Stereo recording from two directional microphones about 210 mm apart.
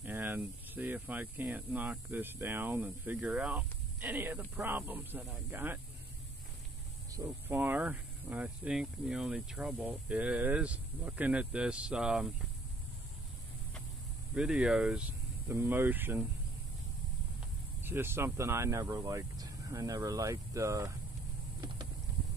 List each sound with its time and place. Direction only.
0.0 s speech: 10° right (ahead or behind)
7.1 s speech: 15° right (ahead or behind)
14.3 s speech: 5° right (ahead or behind)
17.8 s speech: 10° right (ahead or behind)
21.5 s clip-clop: 20° right (ahead or behind)